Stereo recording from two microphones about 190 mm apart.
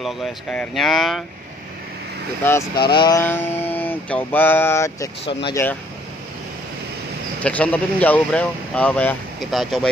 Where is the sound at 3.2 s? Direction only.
10° left (ahead or behind).